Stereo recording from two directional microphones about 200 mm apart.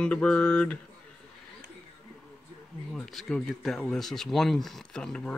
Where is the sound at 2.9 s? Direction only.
Centre (ahead or behind).